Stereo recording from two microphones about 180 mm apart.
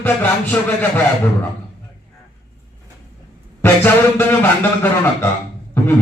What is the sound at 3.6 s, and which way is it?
A man's voice, 10° left (ahead or behind).